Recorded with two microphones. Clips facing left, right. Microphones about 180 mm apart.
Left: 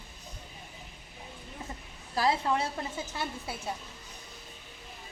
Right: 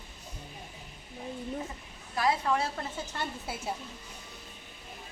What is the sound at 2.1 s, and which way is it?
Speech, 30° left (ahead or behind).